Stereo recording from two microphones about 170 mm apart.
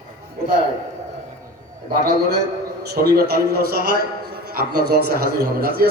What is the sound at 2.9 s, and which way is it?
A man's voice, 70° right (ahead or behind).